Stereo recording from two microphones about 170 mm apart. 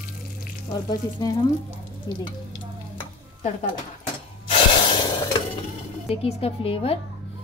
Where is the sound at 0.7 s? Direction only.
25° left (ahead or behind).